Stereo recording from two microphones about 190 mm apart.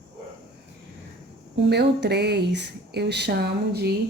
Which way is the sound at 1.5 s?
65° right (ahead or behind).